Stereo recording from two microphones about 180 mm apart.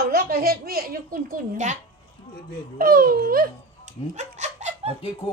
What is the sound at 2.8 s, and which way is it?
Speech, 55° right (ahead or behind).